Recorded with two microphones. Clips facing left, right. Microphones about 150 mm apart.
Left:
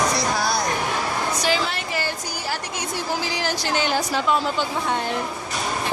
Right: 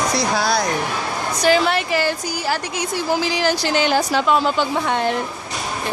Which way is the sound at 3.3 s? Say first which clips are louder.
Right 5 dB; 90° right.